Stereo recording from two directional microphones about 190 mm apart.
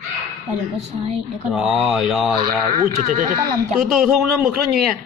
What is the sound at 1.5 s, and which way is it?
Speech, 5° right (ahead or behind).